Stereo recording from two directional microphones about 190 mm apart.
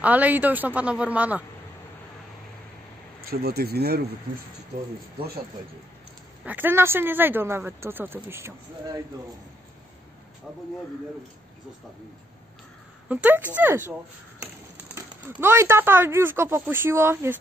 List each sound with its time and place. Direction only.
0.0 s speech: 10° right (ahead or behind)
3.3 s speech: 55° right (ahead or behind)
6.4 s speech: 10° right (ahead or behind)
13.1 s speech: 10° right (ahead or behind)
15.0 s speech: 15° right (ahead or behind)